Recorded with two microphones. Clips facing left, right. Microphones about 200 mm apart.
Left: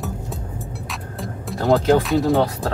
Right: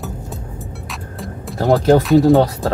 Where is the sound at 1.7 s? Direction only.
35° right (ahead or behind).